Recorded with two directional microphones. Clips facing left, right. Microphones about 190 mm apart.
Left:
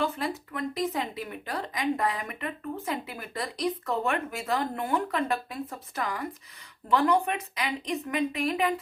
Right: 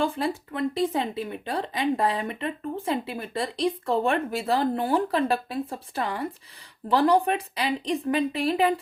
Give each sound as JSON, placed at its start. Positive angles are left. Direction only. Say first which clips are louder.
{"t": 0.0, "sound": "speech", "louder": "right 4 dB", "side_deg": -30}